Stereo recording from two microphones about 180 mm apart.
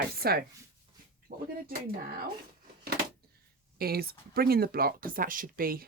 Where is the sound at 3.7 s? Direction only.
60° right (ahead or behind).